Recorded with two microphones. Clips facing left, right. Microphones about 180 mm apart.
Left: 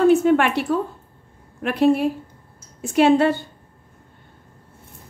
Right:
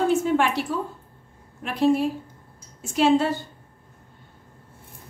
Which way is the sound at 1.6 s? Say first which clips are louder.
Left 3 dB; 65° left (ahead or behind).